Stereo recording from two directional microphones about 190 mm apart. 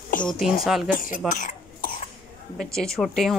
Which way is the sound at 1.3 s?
45° left (ahead or behind).